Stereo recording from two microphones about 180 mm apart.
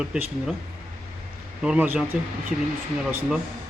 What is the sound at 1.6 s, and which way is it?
Speech, 10° right (ahead or behind).